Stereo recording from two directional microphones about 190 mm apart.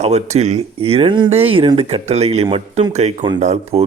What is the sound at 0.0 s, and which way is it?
Speech, 35° right (ahead or behind).